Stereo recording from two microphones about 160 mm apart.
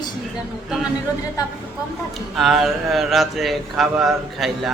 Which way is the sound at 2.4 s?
Centre (ahead or behind).